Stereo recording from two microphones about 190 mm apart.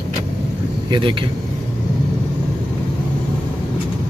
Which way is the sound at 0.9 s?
25° right (ahead or behind).